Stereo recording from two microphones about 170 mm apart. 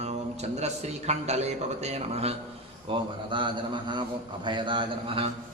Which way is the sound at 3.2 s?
30° right (ahead or behind).